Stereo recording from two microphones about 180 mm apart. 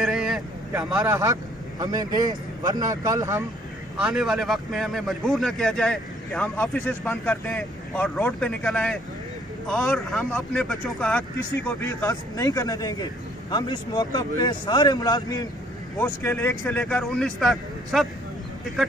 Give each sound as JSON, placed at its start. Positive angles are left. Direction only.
{"t": 0.0, "sound": "vehicle", "side_deg": -5}
{"t": 0.9, "sound": "a man's voice", "side_deg": -15}
{"t": 4.0, "sound": "a man's voice", "side_deg": -5}
{"t": 16.0, "sound": "speech", "side_deg": 10}